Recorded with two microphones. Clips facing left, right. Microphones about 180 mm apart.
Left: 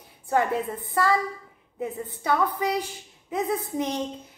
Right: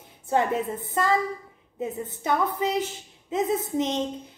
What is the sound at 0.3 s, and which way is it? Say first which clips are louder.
A woman's voice: even; 20° right (ahead or behind).